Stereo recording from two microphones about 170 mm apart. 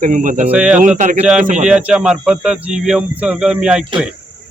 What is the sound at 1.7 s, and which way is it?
Speech, 5° right (ahead or behind).